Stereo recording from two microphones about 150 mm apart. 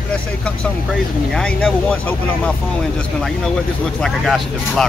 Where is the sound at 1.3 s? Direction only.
5° left (ahead or behind).